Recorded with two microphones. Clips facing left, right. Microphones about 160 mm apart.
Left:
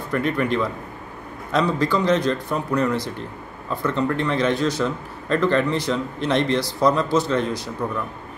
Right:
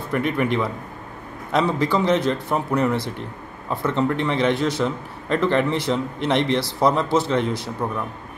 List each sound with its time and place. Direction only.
0.2 s a man's voice: 20° right (ahead or behind)
2.7 s a man's voice: 15° right (ahead or behind)